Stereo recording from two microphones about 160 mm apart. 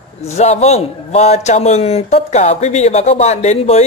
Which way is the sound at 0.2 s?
40° left (ahead or behind).